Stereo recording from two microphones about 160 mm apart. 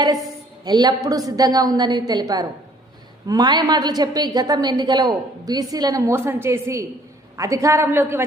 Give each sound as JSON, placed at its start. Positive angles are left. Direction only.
{"t": 0.0, "sound": "a woman's voice", "side_deg": -25}